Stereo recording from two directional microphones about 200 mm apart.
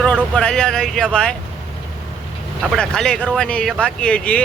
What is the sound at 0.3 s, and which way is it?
Speech, 5° left (ahead or behind).